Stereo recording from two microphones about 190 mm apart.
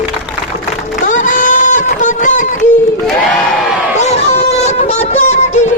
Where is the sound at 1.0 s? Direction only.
40° left (ahead or behind).